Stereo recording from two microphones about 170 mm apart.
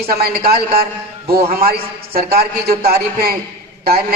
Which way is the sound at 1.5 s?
60° right (ahead or behind).